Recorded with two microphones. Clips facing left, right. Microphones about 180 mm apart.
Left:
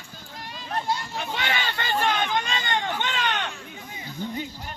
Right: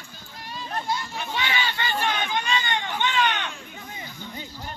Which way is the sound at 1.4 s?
50° left (ahead or behind).